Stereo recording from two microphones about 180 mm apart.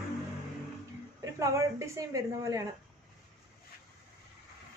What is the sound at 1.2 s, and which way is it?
A woman's voice, 15° right (ahead or behind).